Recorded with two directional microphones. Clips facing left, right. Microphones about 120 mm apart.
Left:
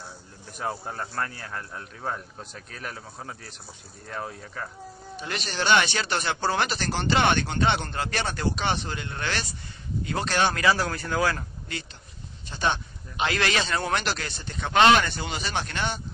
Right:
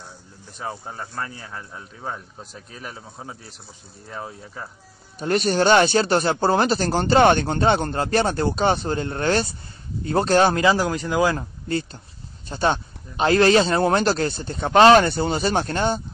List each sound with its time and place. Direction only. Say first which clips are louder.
0.6 s speech: even; centre (ahead or behind)
5.2 s speech: right 11 dB; 45° right (ahead or behind)
10.6 s speech: right 5 dB; 20° right (ahead or behind)
11.1 s speech: right 4 dB; 30° right (ahead or behind)